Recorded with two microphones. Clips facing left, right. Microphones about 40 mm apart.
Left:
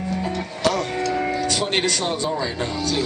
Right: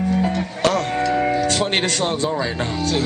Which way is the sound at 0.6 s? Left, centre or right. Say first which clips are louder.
Right 2 dB; right.